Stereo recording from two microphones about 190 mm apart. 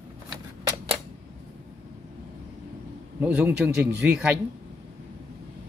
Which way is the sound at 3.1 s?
5° right (ahead or behind).